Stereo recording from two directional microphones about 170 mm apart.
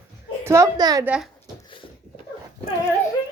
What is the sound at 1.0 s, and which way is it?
Speech, 5° right (ahead or behind).